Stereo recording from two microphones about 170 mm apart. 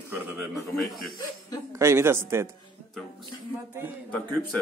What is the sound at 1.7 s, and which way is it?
Speech, 15° right (ahead or behind).